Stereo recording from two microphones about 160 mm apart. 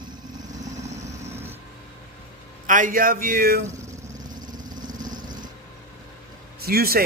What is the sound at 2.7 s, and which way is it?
Speech, 55° right (ahead or behind).